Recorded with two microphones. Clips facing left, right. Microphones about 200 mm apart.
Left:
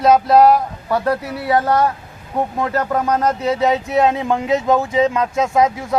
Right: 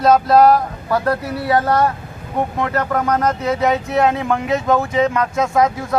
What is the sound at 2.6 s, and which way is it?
Speech, 20° left (ahead or behind).